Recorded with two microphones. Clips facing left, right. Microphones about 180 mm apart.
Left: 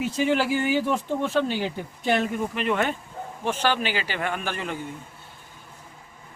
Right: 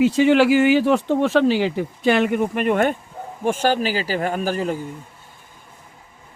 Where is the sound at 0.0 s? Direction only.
90° right; by 4.8 s 40° right (ahead or behind).